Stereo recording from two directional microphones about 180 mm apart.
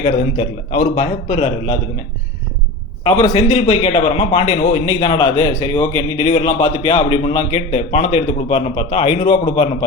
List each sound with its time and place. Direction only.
0.0 s a man's voice: 35° left (ahead or behind)
3.0 s a man's voice: 30° left (ahead or behind)